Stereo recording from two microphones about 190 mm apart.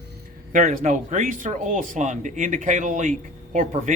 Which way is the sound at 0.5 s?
45° right (ahead or behind).